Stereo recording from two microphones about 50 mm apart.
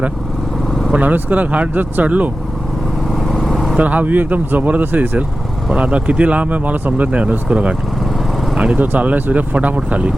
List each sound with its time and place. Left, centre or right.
0.9 s speech: right
3.2 s vehicle: centre
3.8 s speech: right